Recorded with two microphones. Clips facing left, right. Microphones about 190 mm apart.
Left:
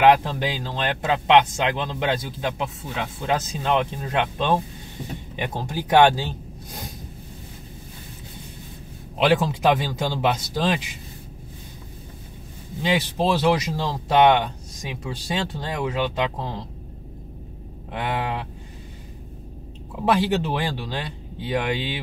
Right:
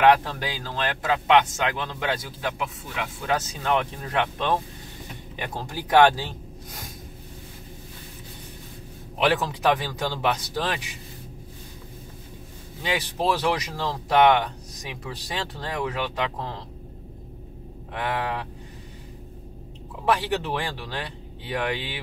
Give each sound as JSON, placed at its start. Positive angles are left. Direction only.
{"t": 0.0, "sound": "speech", "side_deg": 25}
{"t": 9.2, "sound": "speech", "side_deg": 15}
{"t": 12.8, "sound": "speech", "side_deg": 20}
{"t": 17.9, "sound": "speech", "side_deg": 20}
{"t": 20.5, "sound": "speech", "side_deg": 20}